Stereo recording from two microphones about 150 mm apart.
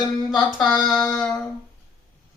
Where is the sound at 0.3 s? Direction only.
Centre (ahead or behind).